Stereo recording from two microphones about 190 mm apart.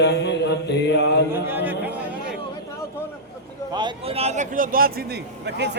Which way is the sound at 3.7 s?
25° right (ahead or behind).